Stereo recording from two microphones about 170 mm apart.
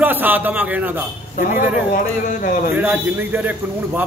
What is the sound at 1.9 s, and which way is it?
Speech, 60° left (ahead or behind).